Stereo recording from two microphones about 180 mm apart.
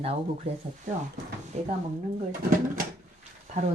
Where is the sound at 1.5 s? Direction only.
35° right (ahead or behind).